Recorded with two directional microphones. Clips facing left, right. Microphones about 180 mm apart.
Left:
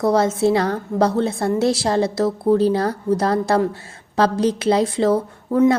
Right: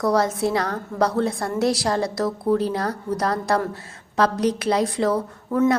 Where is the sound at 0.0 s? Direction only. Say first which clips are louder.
Left 4 dB; 25° left (ahead or behind).